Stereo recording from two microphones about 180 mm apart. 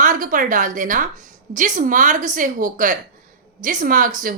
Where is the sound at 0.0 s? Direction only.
45° right (ahead or behind).